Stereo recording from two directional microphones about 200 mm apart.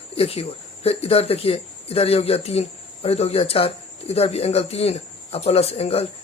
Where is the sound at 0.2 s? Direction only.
30° left (ahead or behind).